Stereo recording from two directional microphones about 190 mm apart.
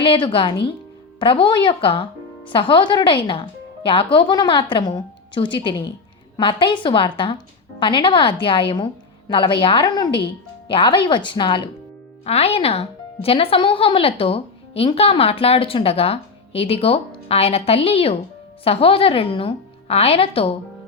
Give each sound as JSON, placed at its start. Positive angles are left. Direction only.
{"t": 0.0, "sound": "a woman's voice", "side_deg": 25}